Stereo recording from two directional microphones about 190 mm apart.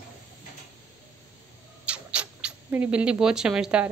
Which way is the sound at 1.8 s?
5° right (ahead or behind).